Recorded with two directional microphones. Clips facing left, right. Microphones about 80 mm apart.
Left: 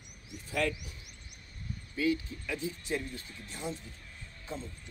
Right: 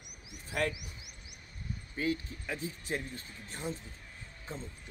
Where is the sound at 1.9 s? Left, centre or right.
Right.